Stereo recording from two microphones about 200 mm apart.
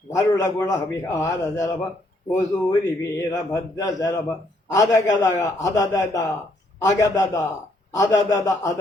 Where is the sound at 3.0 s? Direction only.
15° left (ahead or behind).